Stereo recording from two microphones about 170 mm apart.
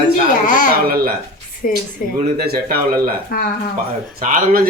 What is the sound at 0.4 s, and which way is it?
Babbling, 50° left (ahead or behind).